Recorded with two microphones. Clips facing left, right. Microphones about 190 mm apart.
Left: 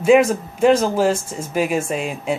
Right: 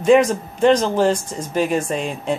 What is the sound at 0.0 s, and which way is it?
Speech, 5° left (ahead or behind).